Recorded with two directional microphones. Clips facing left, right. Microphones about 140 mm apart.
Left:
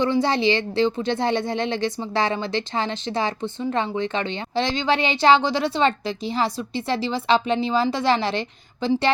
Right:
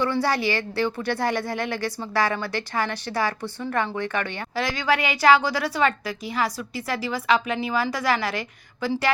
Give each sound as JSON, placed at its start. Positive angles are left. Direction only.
{"t": 0.0, "sound": "a woman's voice", "side_deg": 20}